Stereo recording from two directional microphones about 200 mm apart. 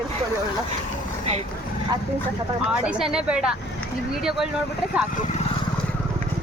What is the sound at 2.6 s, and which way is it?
Speech, 5° right (ahead or behind).